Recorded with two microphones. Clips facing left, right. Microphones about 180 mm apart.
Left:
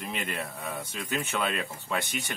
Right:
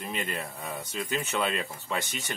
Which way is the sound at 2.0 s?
60° left (ahead or behind).